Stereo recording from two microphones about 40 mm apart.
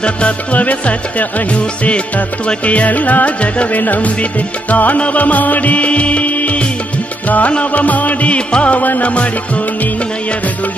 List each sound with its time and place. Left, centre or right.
0.0 s music: left
8.8 s music: left